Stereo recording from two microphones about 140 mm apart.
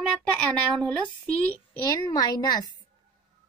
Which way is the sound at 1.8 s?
25° left (ahead or behind).